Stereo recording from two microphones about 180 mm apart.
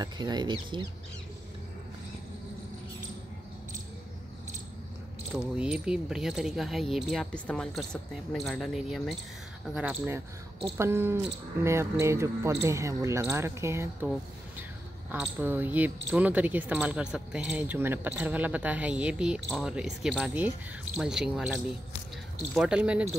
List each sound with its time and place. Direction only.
0.0 s speech: 25° right (ahead or behind)
5.6 s speech: 5° right (ahead or behind)
15.0 s speech: 10° right (ahead or behind)